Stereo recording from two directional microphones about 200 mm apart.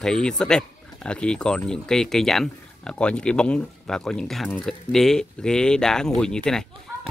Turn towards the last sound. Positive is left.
turn(degrees=5)  # may be behind; listen again after turning